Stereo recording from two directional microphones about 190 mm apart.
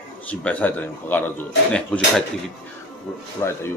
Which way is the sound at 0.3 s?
5° left (ahead or behind).